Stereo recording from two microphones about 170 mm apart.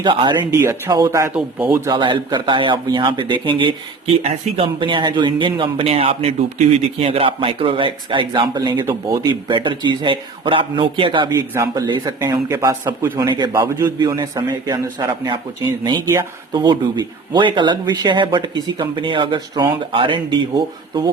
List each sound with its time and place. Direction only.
0.0 s speech: 30° right (ahead or behind)
0.5 s speech: 15° right (ahead or behind)
1.7 s speech: 20° right (ahead or behind)
8.8 s speech: 15° right (ahead or behind)